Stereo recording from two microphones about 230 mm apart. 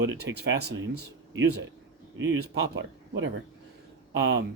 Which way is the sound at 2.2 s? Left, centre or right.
Right.